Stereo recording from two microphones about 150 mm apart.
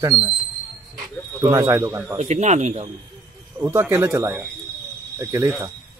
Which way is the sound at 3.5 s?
20° right (ahead or behind).